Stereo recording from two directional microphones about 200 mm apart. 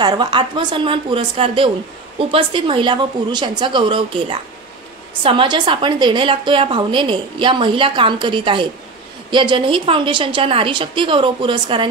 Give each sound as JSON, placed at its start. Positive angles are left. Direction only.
{"t": 0.0, "sound": "a woman's voice", "side_deg": -20}